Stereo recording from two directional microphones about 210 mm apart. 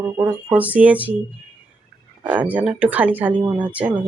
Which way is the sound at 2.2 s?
5° right (ahead or behind).